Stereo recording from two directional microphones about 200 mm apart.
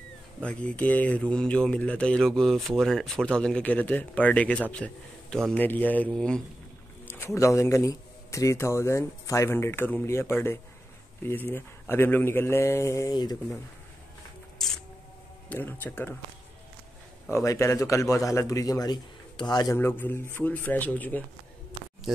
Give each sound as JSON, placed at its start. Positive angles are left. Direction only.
{"t": 0.4, "sound": "speech", "side_deg": 5}
{"t": 15.5, "sound": "speech", "side_deg": 10}
{"t": 17.3, "sound": "speech", "side_deg": 15}